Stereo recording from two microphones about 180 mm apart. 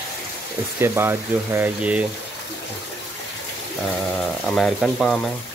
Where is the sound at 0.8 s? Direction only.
15° right (ahead or behind).